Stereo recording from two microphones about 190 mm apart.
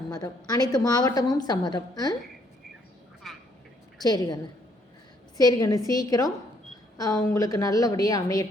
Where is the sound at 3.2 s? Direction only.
Centre (ahead or behind).